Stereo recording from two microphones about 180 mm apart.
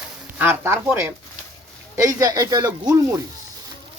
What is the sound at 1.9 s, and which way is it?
Speech, 20° right (ahead or behind).